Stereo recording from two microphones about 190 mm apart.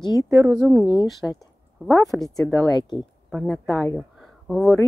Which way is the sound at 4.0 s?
Centre (ahead or behind).